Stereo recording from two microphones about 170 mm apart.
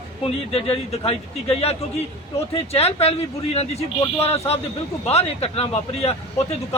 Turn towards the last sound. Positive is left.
turn(degrees=35)  # may be behind; listen again after turning